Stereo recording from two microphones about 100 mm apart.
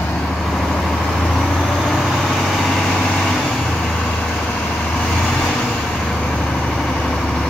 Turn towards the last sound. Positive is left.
turn(degrees=10)  # may be behind; listen again after turning